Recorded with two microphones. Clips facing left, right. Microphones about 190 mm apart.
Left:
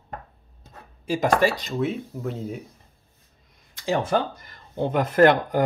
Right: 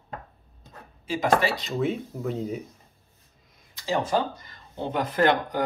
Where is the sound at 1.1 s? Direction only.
45° left (ahead or behind).